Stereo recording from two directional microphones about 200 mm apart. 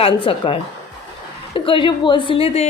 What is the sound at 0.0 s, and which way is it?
A woman's voice, 25° left (ahead or behind).